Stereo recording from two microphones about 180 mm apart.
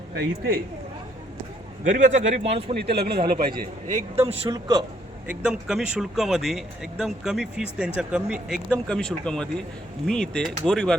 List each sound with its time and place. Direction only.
0.2 s speech: 60° right (ahead or behind)
1.8 s a man's voice: 40° right (ahead or behind)
2.7 s a man's voice: 65° right (ahead or behind); by 4.2 s 45° right (ahead or behind)
4.3 s speech: 25° right (ahead or behind)
5.3 s speech: 5° right (ahead or behind)